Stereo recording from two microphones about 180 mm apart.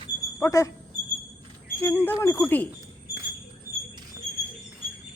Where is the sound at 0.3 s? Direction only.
15° left (ahead or behind).